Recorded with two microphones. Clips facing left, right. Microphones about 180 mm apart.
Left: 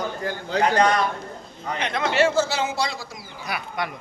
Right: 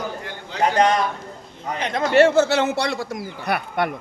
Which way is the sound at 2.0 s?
60° right (ahead or behind).